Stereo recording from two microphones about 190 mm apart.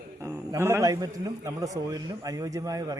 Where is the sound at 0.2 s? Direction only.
15° right (ahead or behind).